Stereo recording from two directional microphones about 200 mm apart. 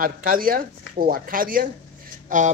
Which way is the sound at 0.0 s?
45° right (ahead or behind).